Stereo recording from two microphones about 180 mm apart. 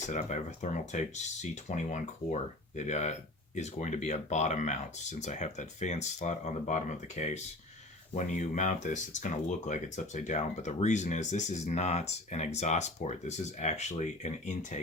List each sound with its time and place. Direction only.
0.1 s speech: 40° left (ahead or behind)